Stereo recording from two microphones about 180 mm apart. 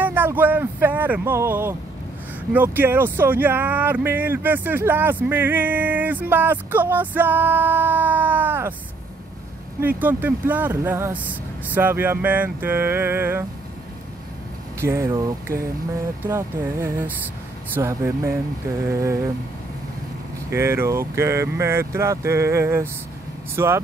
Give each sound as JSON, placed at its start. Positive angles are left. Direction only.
{"t": 0.0, "sound": "a sound", "side_deg": -10}
{"t": 2.5, "sound": "speech", "side_deg": -10}
{"t": 9.8, "sound": "speech", "side_deg": -10}
{"t": 14.8, "sound": "speech", "side_deg": -15}
{"t": 20.4, "sound": "speech", "side_deg": -15}